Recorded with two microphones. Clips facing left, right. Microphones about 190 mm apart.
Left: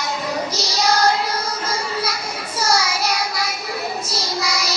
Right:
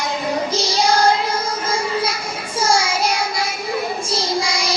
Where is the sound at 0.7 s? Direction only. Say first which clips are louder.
Right 2 dB; 30° right (ahead or behind).